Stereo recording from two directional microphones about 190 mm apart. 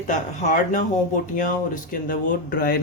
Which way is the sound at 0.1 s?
40° left (ahead or behind).